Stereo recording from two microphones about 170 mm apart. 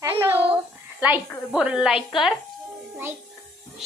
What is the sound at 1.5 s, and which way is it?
Speech, 5° right (ahead or behind).